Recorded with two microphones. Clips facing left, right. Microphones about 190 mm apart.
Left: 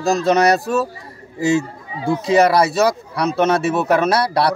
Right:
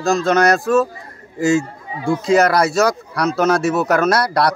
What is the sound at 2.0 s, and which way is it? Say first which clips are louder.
Speech: even; 25° left (ahead or behind).